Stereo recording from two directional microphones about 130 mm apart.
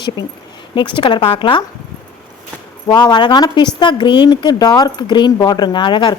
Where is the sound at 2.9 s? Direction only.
35° left (ahead or behind).